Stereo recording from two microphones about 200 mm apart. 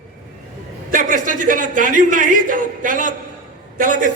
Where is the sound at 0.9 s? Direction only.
40° right (ahead or behind).